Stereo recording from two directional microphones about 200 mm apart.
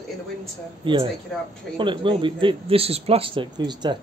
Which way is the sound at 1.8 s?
25° right (ahead or behind).